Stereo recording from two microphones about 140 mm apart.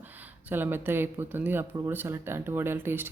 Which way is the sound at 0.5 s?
15° right (ahead or behind).